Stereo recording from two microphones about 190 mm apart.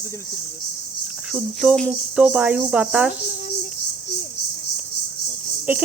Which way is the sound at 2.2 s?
10° right (ahead or behind).